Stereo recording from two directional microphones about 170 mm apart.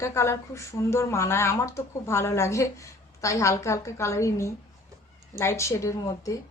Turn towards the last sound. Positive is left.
turn(degrees=20)  # may be behind; listen again after turning